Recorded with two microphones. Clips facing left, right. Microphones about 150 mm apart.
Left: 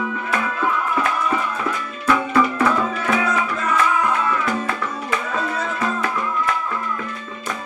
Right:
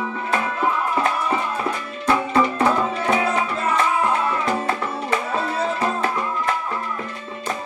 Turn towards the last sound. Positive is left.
turn(degrees=-30)  # may be behind; listen again after turning